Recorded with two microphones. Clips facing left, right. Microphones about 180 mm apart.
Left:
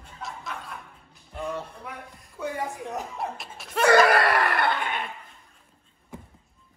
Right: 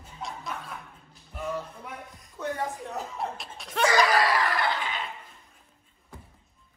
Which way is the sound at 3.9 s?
60° left (ahead or behind).